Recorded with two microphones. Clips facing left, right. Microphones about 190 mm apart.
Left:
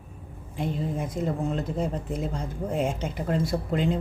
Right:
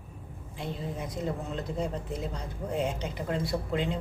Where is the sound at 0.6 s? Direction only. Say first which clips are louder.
Left 6 dB; 50° left (ahead or behind).